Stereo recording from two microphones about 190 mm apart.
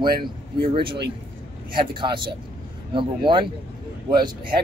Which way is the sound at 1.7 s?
25° right (ahead or behind).